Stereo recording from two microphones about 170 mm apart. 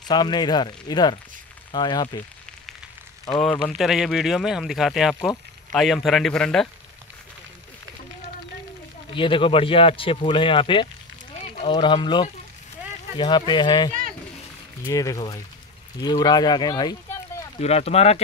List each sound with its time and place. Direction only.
0.1 s speech: 25° left (ahead or behind)
3.4 s speech: 5° left (ahead or behind)
9.1 s speech: 30° left (ahead or behind)
11.3 s run: 40° left (ahead or behind)
11.7 s speech: 25° left (ahead or behind)
14.9 s speech: 20° left (ahead or behind)
17.6 s speech: 40° left (ahead or behind)